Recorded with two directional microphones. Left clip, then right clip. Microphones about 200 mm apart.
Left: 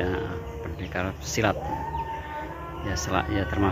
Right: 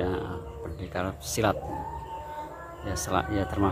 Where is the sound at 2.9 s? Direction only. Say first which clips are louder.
Left 1 dB; 15° right (ahead or behind).